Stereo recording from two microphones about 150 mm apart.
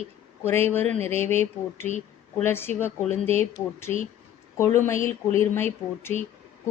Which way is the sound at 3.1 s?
45° right (ahead or behind).